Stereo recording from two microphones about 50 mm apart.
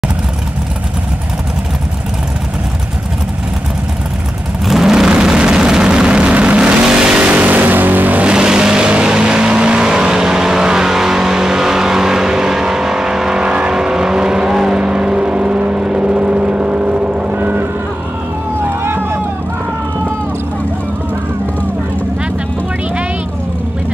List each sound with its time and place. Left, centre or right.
4.6 s vehicle: centre
7.2 s vehicle: right
8.3 s vehicle: centre
17.3 s vehicle: right
18.6 s vehicle: right